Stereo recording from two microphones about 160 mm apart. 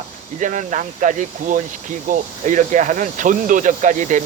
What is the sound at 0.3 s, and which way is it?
Speech, 50° right (ahead or behind).